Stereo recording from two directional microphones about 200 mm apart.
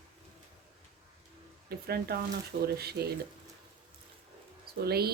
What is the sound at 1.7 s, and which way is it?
Speech, 50° right (ahead or behind).